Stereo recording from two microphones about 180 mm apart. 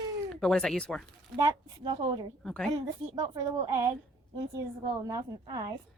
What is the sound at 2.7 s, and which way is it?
A woman's voice, 20° right (ahead or behind).